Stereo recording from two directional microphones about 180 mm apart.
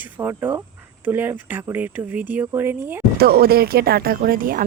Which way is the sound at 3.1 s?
60° right (ahead or behind).